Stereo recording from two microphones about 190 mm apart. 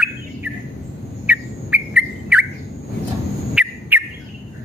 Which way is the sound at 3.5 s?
5° right (ahead or behind).